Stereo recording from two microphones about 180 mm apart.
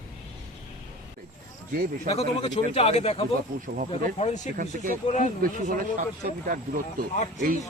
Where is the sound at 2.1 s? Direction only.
35° left (ahead or behind).